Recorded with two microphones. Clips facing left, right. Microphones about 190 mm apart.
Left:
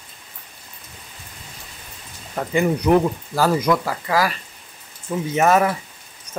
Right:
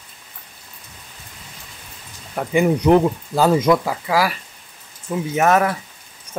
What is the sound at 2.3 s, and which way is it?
Speech, 15° right (ahead or behind).